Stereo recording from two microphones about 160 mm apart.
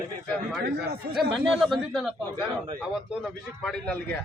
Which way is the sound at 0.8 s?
80° right.